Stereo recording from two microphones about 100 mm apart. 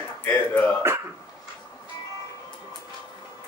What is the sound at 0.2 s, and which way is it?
Speech, 15° left (ahead or behind).